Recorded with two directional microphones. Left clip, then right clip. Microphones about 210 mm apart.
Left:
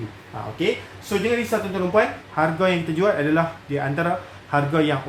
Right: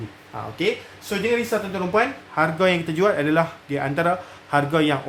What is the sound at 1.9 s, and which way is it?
A man's voice, 40° right (ahead or behind).